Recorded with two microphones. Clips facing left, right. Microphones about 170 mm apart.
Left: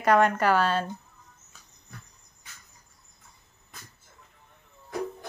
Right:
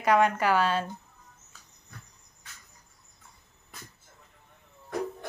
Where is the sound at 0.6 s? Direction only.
15° right (ahead or behind).